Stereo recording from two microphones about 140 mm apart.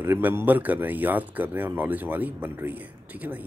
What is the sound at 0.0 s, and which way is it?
Speech, 15° right (ahead or behind).